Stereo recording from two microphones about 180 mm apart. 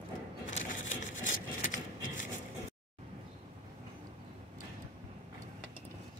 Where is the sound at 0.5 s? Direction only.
45° left (ahead or behind).